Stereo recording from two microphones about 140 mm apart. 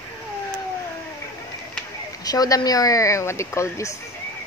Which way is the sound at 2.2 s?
25° left (ahead or behind).